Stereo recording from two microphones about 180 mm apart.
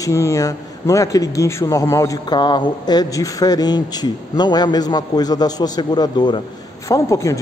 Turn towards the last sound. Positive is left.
turn(degrees=15)  # may be behind; listen again after turning